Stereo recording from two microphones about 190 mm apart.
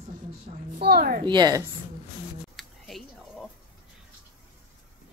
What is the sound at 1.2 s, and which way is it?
Speech, 20° right (ahead or behind).